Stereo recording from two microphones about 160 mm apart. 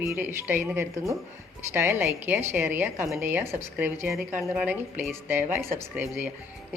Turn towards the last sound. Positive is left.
turn(degrees=-10)  # may be behind; listen again after turning